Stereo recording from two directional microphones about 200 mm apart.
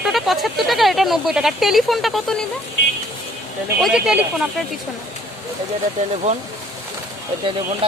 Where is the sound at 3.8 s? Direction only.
Centre (ahead or behind).